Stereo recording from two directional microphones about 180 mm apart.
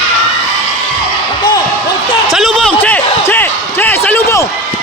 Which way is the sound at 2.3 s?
Centre (ahead or behind).